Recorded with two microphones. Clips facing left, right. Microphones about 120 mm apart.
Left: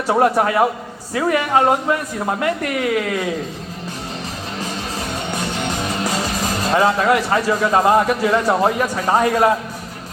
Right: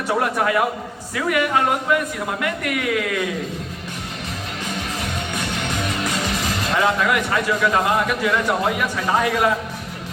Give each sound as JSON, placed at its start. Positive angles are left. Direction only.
{"t": 0.2, "sound": "speech", "side_deg": 30}
{"t": 5.3, "sound": "speech", "side_deg": 35}